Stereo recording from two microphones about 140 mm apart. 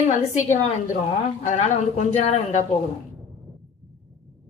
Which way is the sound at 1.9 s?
55° left (ahead or behind).